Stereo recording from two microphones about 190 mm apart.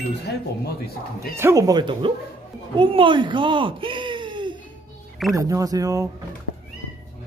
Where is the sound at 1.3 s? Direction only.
15° right (ahead or behind).